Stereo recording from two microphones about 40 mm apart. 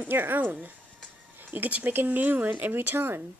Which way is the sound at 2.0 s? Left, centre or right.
Right.